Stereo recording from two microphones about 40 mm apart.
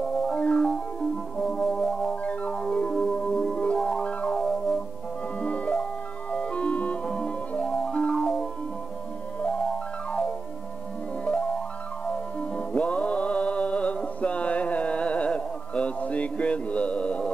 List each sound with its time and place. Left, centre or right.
0.0 s music: centre
4.3 s music: centre
5.4 s music: left